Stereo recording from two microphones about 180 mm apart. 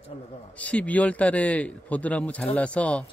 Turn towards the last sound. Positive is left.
turn(degrees=5)  # may be behind; listen again after turning